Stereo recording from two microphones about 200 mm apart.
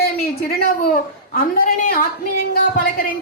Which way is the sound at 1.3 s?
45° left (ahead or behind).